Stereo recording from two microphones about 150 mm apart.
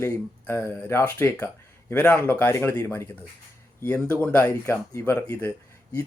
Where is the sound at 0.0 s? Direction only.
15° left (ahead or behind).